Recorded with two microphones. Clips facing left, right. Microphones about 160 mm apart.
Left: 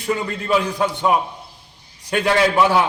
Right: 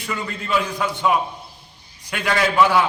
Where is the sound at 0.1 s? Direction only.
30° left (ahead or behind).